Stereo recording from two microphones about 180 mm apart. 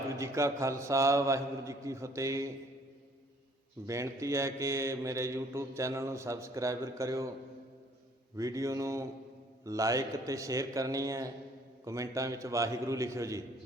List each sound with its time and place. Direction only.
0.1 s mantra: 15° right (ahead or behind)
3.8 s mantra: 15° right (ahead or behind)
8.4 s mantra: 20° right (ahead or behind)
9.6 s a man's voice: 20° right (ahead or behind)
11.9 s mantra: 15° right (ahead or behind)